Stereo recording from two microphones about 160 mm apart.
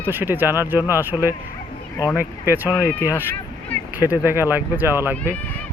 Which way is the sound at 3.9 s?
15° right (ahead or behind).